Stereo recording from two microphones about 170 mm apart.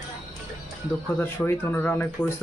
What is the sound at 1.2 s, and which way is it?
Speech, 10° left (ahead or behind).